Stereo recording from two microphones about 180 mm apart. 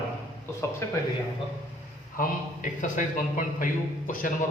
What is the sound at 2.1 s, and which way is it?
A man's voice, 50° left (ahead or behind).